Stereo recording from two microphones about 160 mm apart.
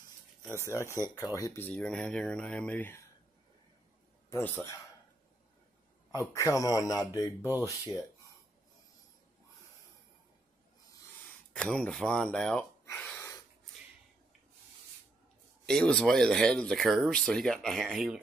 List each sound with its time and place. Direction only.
0.4 s speech: 15° left (ahead or behind)
1.7 s speech: 5° left (ahead or behind)
4.3 s speech: 15° left (ahead or behind)
6.1 s speech: 20° left (ahead or behind)
11.5 s speech: 5° left (ahead or behind)
12.8 s gasp: 15° left (ahead or behind)
15.6 s speech: 5° left (ahead or behind)